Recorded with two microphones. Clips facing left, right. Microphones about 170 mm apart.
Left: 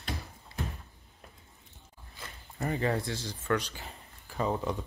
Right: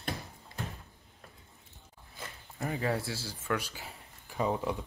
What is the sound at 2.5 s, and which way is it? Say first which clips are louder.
Speech: left 2 dB; centre (ahead or behind).